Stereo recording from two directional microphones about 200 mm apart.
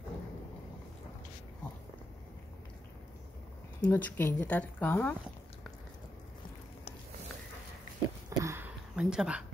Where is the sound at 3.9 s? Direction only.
10° left (ahead or behind).